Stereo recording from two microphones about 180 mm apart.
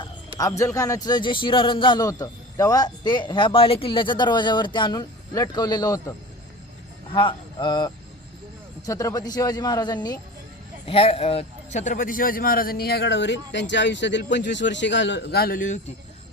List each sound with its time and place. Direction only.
0.3 s a man's voice: 20° left (ahead or behind); by 15.8 s 45° left (ahead or behind)